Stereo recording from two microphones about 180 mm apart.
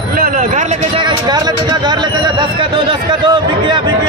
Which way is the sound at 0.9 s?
25° right (ahead or behind).